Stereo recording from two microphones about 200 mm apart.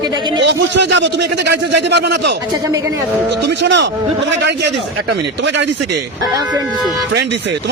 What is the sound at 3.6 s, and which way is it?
Speech, 60° right (ahead or behind).